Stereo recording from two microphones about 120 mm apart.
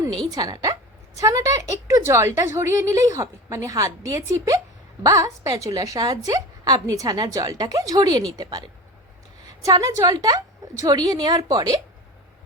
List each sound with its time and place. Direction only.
0.0 s a woman's voice: 35° right (ahead or behind)